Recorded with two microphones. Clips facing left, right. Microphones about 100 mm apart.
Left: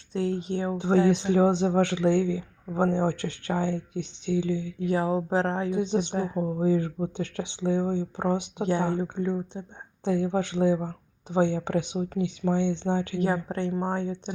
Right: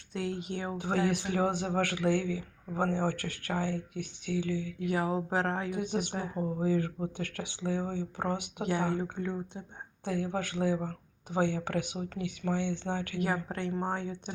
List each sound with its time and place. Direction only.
0.1 s speech: 30° left (ahead or behind)